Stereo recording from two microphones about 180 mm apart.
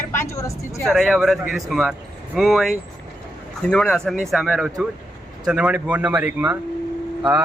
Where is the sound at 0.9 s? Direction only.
Centre (ahead or behind).